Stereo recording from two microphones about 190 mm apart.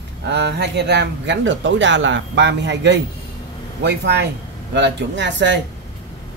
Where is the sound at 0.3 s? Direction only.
65° right (ahead or behind).